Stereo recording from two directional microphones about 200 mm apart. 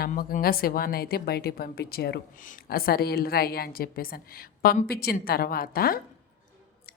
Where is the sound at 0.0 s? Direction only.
45° left (ahead or behind).